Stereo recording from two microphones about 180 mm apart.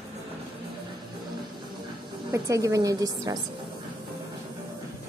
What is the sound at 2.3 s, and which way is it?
A woman's voice, 15° right (ahead or behind).